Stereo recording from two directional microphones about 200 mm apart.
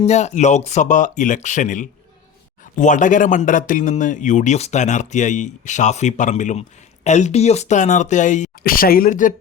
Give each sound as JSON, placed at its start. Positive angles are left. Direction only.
{"t": 0.0, "sound": "speech", "side_deg": 35}